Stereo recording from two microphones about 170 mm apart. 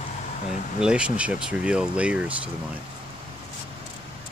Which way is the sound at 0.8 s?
5° right (ahead or behind).